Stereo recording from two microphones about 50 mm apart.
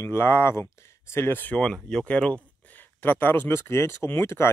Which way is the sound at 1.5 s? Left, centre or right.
Centre.